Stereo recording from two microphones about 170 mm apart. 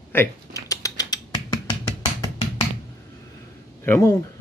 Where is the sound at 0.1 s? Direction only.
15° left (ahead or behind).